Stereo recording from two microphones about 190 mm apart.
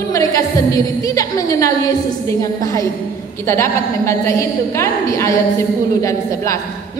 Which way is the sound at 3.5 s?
15° left (ahead or behind).